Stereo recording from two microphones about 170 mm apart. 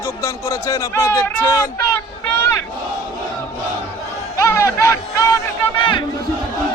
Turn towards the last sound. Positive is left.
turn(degrees=30)  # may be behind; listen again after turning